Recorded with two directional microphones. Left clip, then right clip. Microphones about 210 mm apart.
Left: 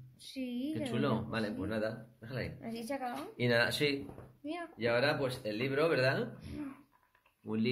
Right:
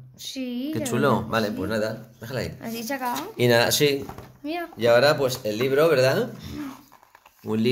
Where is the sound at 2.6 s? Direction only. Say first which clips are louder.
Right 10 dB; 5° right (ahead or behind).